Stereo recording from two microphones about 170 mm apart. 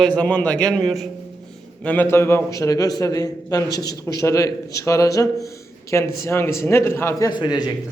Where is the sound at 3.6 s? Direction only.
75° left (ahead or behind).